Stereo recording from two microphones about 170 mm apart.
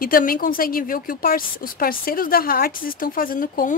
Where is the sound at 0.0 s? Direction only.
60° left (ahead or behind).